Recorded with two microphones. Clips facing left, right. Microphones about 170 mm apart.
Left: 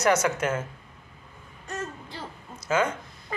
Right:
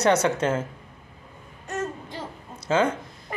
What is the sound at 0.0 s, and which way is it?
Speech, 30° right (ahead or behind).